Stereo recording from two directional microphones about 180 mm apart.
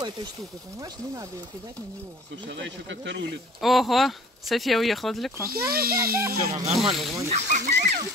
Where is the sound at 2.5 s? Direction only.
80° right.